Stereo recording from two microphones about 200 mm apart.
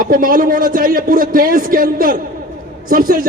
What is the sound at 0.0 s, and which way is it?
Speech, 45° right (ahead or behind).